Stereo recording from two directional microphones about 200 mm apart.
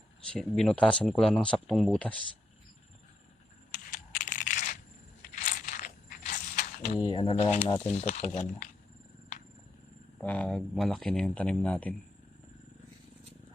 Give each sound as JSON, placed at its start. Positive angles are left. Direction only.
{"t": 0.3, "sound": "speech", "side_deg": 5}
{"t": 3.7, "sound": "coin", "side_deg": 45}
{"t": 5.3, "sound": "a sound", "side_deg": 40}
{"t": 6.9, "sound": "speech", "side_deg": 25}
{"t": 10.2, "sound": "speech", "side_deg": 5}